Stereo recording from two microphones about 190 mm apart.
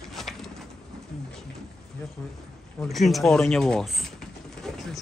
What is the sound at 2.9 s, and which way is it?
Speech, centre (ahead or behind).